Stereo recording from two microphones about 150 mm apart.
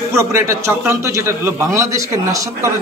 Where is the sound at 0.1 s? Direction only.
20° right (ahead or behind).